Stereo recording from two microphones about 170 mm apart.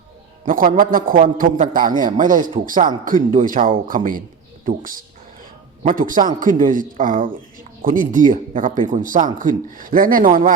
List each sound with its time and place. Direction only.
0.4 s a man's voice: 55° right (ahead or behind)